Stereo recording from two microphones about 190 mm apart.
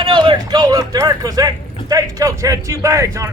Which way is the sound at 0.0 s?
25° right (ahead or behind).